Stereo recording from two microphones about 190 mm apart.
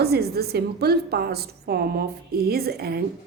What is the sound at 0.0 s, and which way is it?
A woman's voice, 55° right (ahead or behind).